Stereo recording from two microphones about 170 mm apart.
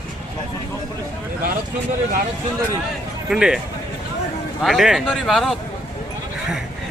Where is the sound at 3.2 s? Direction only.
5° right (ahead or behind).